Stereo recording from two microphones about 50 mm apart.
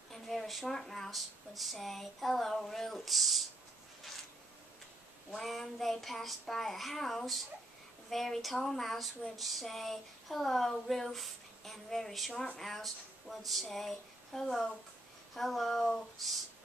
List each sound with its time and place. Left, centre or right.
0.1 s speech: centre
5.3 s speech: centre